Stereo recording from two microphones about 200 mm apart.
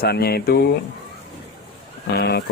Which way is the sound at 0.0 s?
50° left (ahead or behind).